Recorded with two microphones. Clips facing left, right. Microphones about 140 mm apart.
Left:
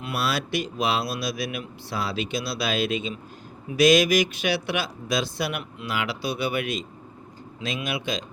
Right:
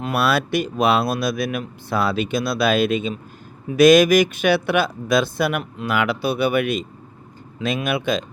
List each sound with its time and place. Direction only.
0.0 s speech: 55° right (ahead or behind)